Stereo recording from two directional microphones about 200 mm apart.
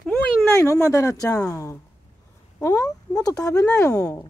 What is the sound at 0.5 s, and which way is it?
Speech, 15° left (ahead or behind).